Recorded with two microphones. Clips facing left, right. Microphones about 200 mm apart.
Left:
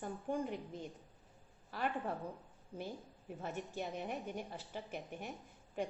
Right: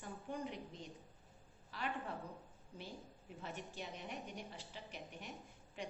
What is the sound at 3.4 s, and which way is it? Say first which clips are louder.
A woman's voice: left 6 dB; 50° left (ahead or behind).